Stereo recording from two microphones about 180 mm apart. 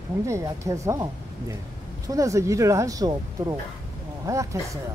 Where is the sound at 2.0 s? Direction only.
20° right (ahead or behind).